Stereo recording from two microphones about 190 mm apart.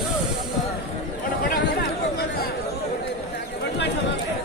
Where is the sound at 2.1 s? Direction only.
55° left (ahead or behind).